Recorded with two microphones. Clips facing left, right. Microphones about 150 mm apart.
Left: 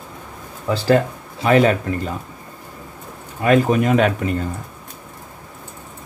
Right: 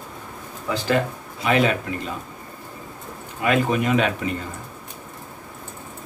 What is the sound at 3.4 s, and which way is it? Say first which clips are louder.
Speech: left 5 dB; 40° left (ahead or behind).